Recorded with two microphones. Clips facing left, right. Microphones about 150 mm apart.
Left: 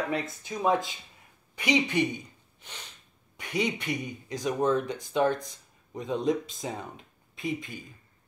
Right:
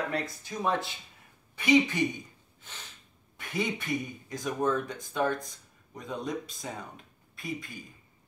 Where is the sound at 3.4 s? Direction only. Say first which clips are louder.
Left 3 dB; 20° left (ahead or behind).